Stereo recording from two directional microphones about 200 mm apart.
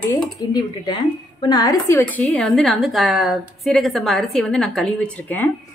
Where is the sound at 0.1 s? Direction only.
20° left (ahead or behind).